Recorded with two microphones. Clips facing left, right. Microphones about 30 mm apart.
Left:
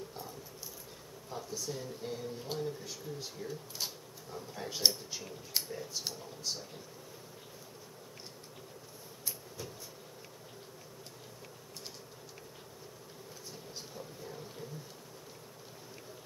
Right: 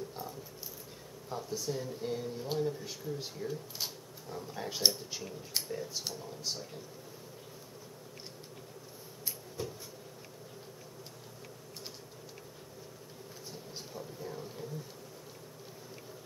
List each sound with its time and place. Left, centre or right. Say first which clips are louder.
1.3 s speech: right 4 dB; centre
2.8 s speech: right 3 dB; centre
3.3 s speech: right 2 dB; centre
13.9 s a sound: right 6 dB; centre